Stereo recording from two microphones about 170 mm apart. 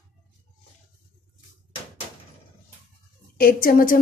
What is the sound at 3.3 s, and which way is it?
Speech, 60° left (ahead or behind).